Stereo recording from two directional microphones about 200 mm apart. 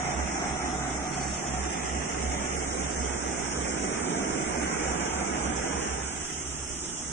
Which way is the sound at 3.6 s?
60° left (ahead or behind).